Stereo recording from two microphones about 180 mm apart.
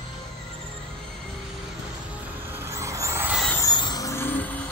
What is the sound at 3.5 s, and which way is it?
Vehicle, 20° left (ahead or behind).